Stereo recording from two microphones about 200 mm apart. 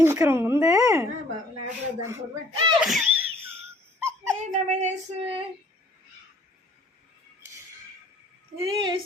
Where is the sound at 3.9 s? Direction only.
15° right (ahead or behind).